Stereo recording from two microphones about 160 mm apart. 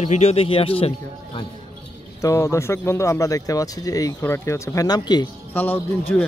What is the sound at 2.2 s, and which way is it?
Speech, 20° left (ahead or behind).